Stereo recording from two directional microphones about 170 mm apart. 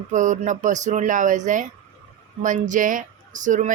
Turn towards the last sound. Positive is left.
turn(degrees=-45)  # may be behind; listen again after turning